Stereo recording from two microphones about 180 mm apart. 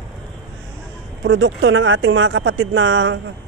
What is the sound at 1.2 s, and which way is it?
Speech, 90° right.